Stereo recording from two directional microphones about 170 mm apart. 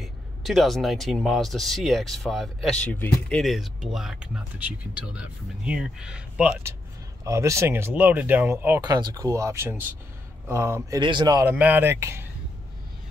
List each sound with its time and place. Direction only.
0.0 s speech: centre (ahead or behind)
7.2 s speech: 20° right (ahead or behind)
8.8 s speech: 25° right (ahead or behind)
11.0 s speech: 25° right (ahead or behind)
11.4 s speech: 10° right (ahead or behind)